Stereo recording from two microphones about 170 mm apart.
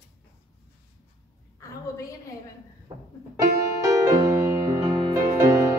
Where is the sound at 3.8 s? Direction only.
20° right (ahead or behind).